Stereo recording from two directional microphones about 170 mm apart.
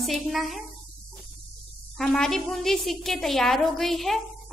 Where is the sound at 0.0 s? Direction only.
Centre (ahead or behind).